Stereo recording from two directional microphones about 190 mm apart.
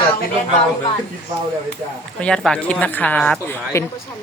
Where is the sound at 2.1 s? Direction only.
5° left (ahead or behind).